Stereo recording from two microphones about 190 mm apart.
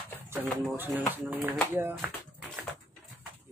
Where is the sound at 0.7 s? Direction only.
10° right (ahead or behind).